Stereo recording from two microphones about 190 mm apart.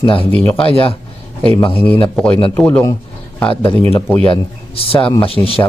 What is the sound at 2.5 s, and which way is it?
Speech, 10° left (ahead or behind).